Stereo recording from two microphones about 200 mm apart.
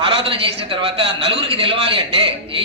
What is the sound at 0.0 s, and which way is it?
A man's voice, 25° right (ahead or behind).